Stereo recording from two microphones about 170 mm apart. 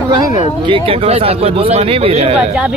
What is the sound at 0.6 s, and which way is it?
Speech, 30° right (ahead or behind).